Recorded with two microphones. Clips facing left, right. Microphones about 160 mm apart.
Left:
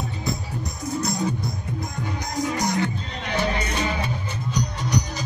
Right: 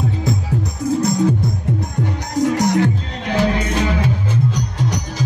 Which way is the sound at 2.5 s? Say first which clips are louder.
Right 8 dB; 90° right.